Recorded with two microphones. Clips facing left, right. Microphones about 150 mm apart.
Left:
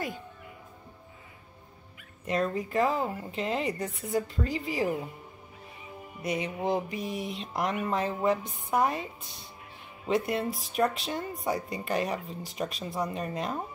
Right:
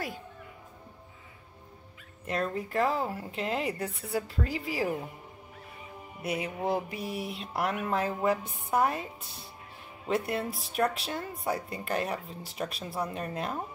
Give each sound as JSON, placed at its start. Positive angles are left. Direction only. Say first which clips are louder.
{"t": 2.2, "sound": "speech", "louder": "left 3 dB", "side_deg": 0}
{"t": 6.2, "sound": "speech", "louder": "left 1 dB", "side_deg": -5}